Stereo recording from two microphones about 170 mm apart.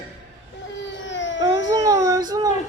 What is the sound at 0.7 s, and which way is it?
Baby cry, 90° left.